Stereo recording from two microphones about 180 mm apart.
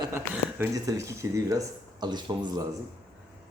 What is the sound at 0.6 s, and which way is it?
Speech, 20° right (ahead or behind).